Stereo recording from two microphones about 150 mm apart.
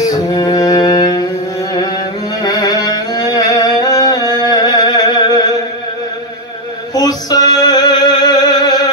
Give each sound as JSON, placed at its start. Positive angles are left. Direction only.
{"t": 0.0, "sound": "music", "side_deg": 25}
{"t": 1.7, "sound": "carnatic music", "side_deg": 25}
{"t": 2.4, "sound": "music", "side_deg": 25}
{"t": 6.9, "sound": "music", "side_deg": 25}